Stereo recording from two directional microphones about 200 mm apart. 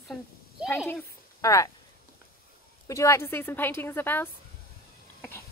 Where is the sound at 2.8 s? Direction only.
15° left (ahead or behind).